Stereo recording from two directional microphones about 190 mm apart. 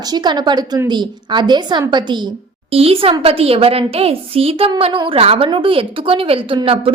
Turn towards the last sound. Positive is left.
turn(degrees=-30)  # may be behind; listen again after turning